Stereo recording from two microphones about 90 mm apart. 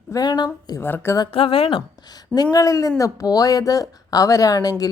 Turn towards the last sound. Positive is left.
turn(degrees=45)  # may be behind; listen again after turning